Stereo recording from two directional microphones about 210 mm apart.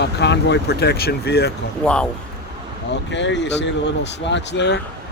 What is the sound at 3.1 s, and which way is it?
Speech, 60° left (ahead or behind).